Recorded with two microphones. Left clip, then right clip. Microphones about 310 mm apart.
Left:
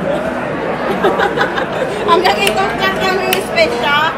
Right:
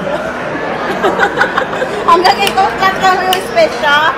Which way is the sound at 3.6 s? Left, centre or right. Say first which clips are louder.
Right 3 dB; centre.